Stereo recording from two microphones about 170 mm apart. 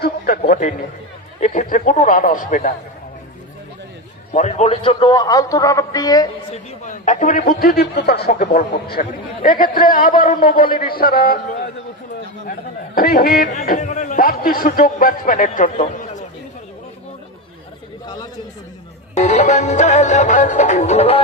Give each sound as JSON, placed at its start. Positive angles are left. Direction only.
{"t": 0.0, "sound": "a man's voice", "side_deg": 60}
{"t": 1.4, "sound": "music", "side_deg": 50}
{"t": 4.4, "sound": "a man's voice", "side_deg": 40}
{"t": 6.5, "sound": "music", "side_deg": 45}
{"t": 8.3, "sound": "music", "side_deg": 55}
{"t": 8.7, "sound": "speech", "side_deg": 60}
{"t": 18.0, "sound": "chatter", "side_deg": 25}
{"t": 19.1, "sound": "music", "side_deg": 40}